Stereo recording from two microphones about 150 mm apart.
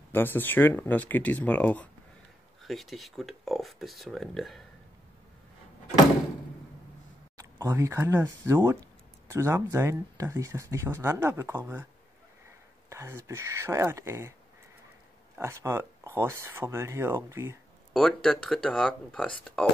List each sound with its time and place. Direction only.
0.1 s speech: 15° left (ahead or behind)
7.3 s speech: 20° right (ahead or behind)
12.9 s speech: 15° right (ahead or behind)
15.3 s speech: 15° right (ahead or behind)
17.9 s speech: 5° left (ahead or behind)